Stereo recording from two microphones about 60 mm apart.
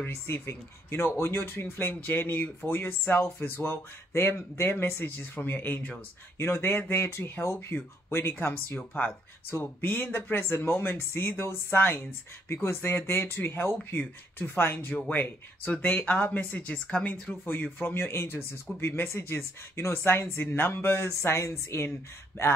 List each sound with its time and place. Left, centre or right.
0.0 s speech: left